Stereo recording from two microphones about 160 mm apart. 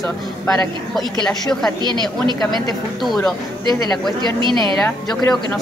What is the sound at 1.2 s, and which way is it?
Speech, 5° left (ahead or behind).